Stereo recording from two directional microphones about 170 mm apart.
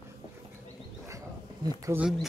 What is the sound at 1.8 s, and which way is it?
Speech, 10° right (ahead or behind).